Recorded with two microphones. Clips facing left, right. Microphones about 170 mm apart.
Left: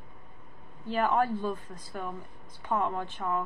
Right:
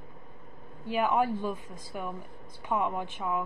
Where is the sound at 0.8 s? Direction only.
10° right (ahead or behind).